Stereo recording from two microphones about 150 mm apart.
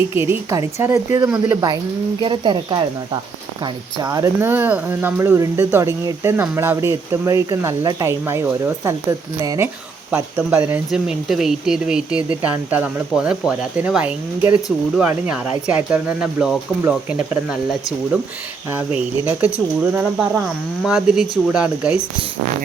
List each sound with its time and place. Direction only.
0.1 s speech: 15° right (ahead or behind)
2.2 s speech: 30° right (ahead or behind)
3.9 s speech: 25° right (ahead or behind)
10.3 s speech: 10° right (ahead or behind)
18.9 s speech: 10° right (ahead or behind)